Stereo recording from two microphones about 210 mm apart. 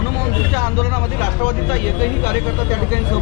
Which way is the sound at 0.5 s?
20° left (ahead or behind).